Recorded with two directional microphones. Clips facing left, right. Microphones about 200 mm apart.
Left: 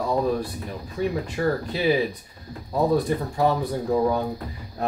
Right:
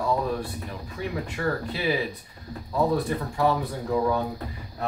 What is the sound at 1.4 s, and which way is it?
Speech, 30° left (ahead or behind).